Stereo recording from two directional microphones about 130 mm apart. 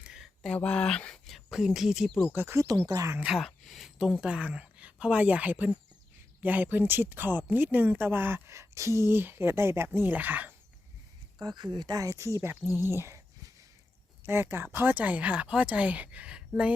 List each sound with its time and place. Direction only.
0.0 s a sound: 5° right (ahead or behind)
0.5 s speech: 10° left (ahead or behind)
2.3 s speech: 20° right (ahead or behind)
3.2 s speech: 5° right (ahead or behind)
11.4 s speech: 30° right (ahead or behind)
14.3 s speech: 15° right (ahead or behind)